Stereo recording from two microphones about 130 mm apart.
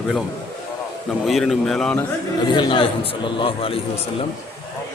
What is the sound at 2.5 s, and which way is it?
A man's voice, 35° left (ahead or behind).